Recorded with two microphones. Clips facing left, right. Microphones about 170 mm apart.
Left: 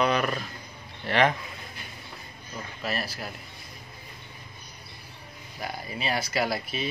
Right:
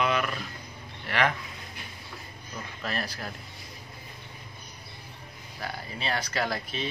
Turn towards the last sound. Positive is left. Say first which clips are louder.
# left 2 dB
turn(degrees=10)  # may be behind; listen again after turning